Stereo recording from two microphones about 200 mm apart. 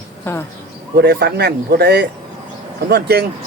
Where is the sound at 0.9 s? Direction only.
55° right (ahead or behind).